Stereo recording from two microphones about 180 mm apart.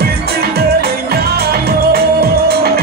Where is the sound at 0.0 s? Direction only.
60° right (ahead or behind).